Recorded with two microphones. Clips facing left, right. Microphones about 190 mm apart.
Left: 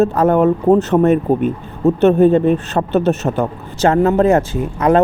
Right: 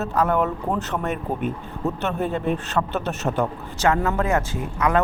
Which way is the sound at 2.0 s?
25° left (ahead or behind).